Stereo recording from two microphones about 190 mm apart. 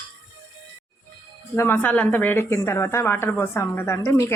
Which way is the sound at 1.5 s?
10° left (ahead or behind).